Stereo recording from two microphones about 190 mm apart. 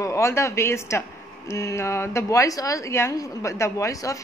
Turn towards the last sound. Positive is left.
turn(degrees=15)  # may be behind; listen again after turning